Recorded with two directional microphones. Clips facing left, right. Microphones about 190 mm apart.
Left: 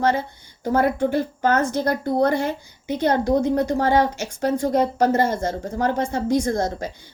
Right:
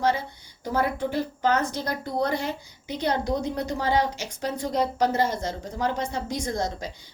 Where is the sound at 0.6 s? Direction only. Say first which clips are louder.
Left 6 dB; 55° left (ahead or behind).